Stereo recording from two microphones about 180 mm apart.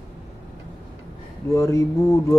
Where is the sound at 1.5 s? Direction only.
15° left (ahead or behind).